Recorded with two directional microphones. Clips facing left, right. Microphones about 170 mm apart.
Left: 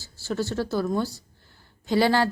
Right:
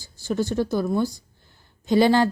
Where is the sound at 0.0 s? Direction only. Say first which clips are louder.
Right 3 dB; 15° right (ahead or behind).